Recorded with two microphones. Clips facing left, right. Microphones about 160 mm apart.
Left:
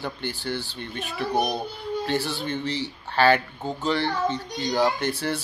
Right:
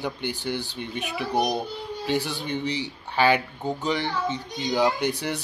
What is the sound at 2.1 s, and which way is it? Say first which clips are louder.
Speech: right 3 dB; 15° right (ahead or behind).